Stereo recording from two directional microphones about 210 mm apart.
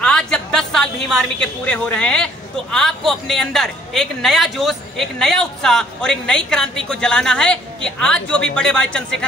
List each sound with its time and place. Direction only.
0.0 s a woman's voice: 5° left (ahead or behind)